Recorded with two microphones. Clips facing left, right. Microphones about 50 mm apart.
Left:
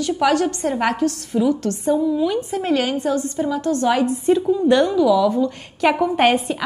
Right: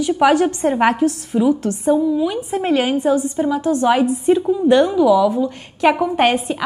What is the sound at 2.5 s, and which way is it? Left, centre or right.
A woman's voice, centre.